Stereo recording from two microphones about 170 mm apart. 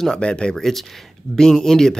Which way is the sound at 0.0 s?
5° left (ahead or behind).